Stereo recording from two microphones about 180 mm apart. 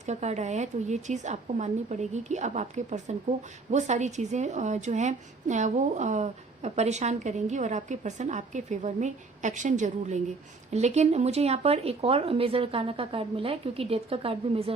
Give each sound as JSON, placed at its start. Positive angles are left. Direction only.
{"t": 0.0, "sound": "a woman's voice", "side_deg": -40}